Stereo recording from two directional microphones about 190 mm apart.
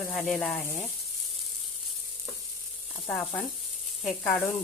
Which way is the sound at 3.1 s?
5° left (ahead or behind).